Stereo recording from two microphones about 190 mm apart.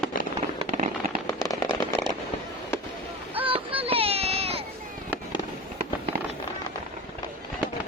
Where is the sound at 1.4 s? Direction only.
20° left (ahead or behind).